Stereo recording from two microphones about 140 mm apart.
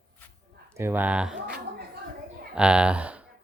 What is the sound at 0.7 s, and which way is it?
Speech, 15° right (ahead or behind).